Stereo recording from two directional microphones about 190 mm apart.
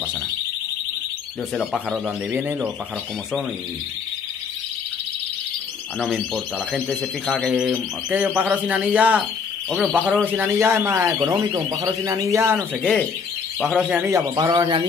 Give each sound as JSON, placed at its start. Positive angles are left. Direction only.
{"t": 1.5, "sound": "a man's voice", "side_deg": 0}
{"t": 2.0, "sound": "speech", "side_deg": -10}
{"t": 5.9, "sound": "a man's voice", "side_deg": 0}
{"t": 12.8, "sound": "a man's voice", "side_deg": 5}
{"t": 13.7, "sound": "speech", "side_deg": -5}